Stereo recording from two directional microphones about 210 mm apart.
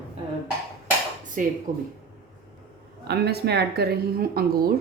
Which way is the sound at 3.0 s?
50° right (ahead or behind).